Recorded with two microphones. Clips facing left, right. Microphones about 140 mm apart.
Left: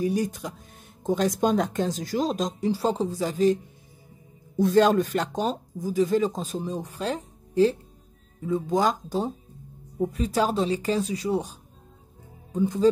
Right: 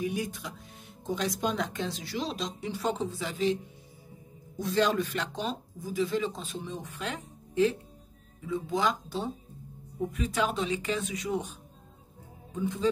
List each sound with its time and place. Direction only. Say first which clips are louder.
0.0 s speech: left 7 dB; 40° left (ahead or behind)
4.6 s speech: left 8 dB; 45° left (ahead or behind)
12.5 s speech: left 7 dB; 40° left (ahead or behind)